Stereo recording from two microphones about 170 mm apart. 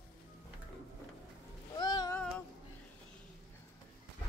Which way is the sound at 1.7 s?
25° left (ahead or behind).